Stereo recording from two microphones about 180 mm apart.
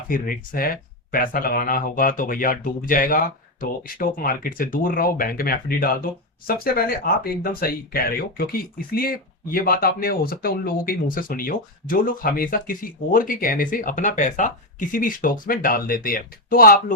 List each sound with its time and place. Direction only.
0.1 s speech: 55° left (ahead or behind)